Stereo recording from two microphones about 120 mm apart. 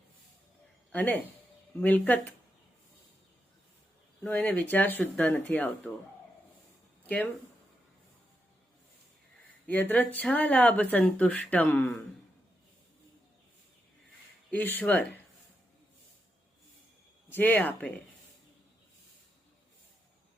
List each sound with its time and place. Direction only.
0.9 s speech: 15° left (ahead or behind)
4.3 s speech: 15° left (ahead or behind)
7.0 s a sound: 10° left (ahead or behind)
9.6 s speech: 15° left (ahead or behind)
14.5 s speech: 15° left (ahead or behind)
17.3 s speech: 15° left (ahead or behind)